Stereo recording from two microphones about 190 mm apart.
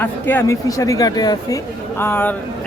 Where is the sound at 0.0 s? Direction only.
10° left (ahead or behind).